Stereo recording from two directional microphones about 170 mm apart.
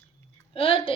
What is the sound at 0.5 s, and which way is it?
Speech, 35° left (ahead or behind).